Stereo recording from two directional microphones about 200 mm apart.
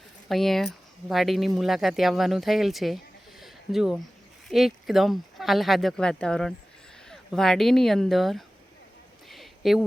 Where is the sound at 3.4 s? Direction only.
Centre (ahead or behind).